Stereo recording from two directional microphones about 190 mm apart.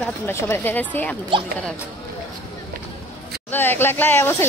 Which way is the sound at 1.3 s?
30° right (ahead or behind).